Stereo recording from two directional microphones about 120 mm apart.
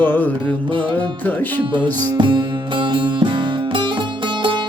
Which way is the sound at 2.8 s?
40° right (ahead or behind).